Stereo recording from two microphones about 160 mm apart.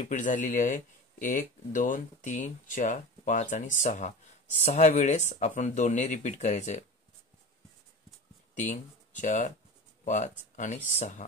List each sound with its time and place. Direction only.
0.0 s speech: 50° left (ahead or behind)
8.5 s speech: 50° left (ahead or behind)